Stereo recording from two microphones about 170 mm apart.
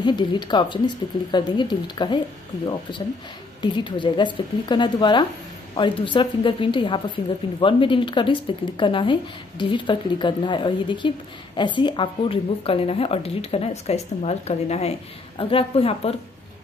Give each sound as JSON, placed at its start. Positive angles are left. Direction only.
{"t": 0.0, "sound": "speech", "side_deg": 25}
{"t": 3.6, "sound": "speech", "side_deg": 30}